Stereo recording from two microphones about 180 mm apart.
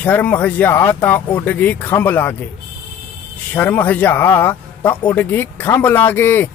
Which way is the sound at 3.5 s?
10° left (ahead or behind).